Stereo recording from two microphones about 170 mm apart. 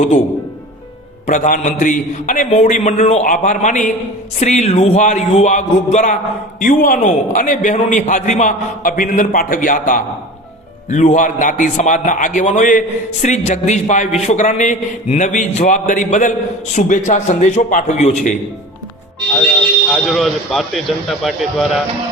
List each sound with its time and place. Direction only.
1.3 s a man's voice: 50° left (ahead or behind)
19.9 s a man's voice: centre (ahead or behind)